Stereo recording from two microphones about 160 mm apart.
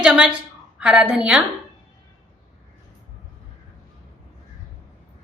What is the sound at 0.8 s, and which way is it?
Speech, 5° right (ahead or behind).